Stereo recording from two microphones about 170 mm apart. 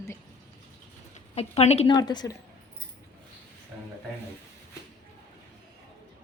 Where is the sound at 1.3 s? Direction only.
35° left (ahead or behind).